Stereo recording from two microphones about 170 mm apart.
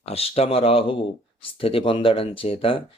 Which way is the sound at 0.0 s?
35° left (ahead or behind).